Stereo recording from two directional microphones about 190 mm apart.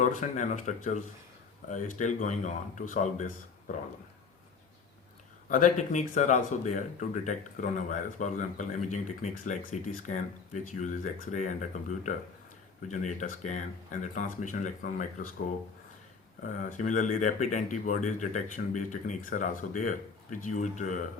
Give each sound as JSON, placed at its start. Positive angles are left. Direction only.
{"t": 0.0, "sound": "speech", "side_deg": 40}
{"t": 5.5, "sound": "speech", "side_deg": 40}
{"t": 16.4, "sound": "speech", "side_deg": 45}